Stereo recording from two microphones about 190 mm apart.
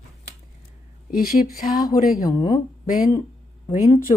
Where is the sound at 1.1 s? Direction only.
50° left (ahead or behind).